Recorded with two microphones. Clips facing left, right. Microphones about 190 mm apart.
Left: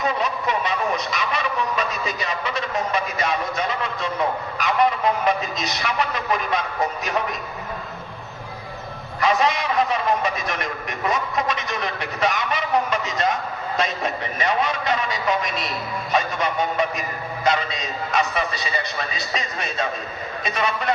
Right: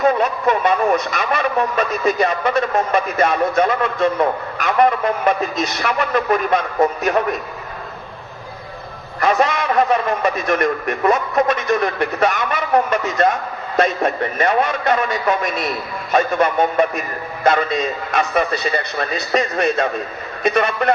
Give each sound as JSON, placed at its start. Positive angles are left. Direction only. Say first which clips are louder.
{"t": 0.0, "sound": "a man's voice", "louder": "right 8 dB", "side_deg": -50}
{"t": 9.2, "sound": "a man's voice", "louder": "right 4 dB", "side_deg": -55}